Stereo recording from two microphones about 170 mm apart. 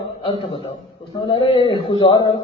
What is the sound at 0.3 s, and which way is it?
A man's voice, 30° left (ahead or behind).